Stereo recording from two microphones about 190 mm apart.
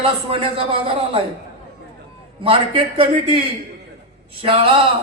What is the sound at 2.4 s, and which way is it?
Speech, 30° right (ahead or behind).